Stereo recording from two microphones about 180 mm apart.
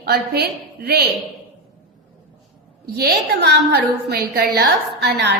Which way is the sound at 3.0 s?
65° right (ahead or behind).